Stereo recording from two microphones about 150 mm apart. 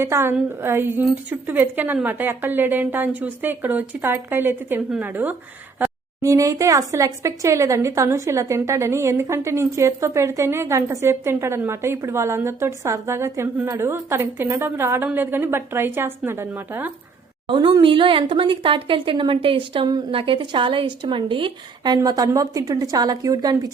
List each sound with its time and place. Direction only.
0.0 s a woman's voice: 15° right (ahead or behind)
17.5 s speech: 30° right (ahead or behind)